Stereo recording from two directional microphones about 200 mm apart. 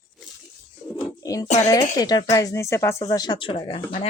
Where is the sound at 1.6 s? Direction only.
20° left (ahead or behind).